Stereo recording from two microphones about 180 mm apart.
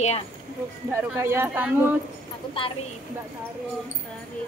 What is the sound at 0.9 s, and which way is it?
Speech, 15° right (ahead or behind).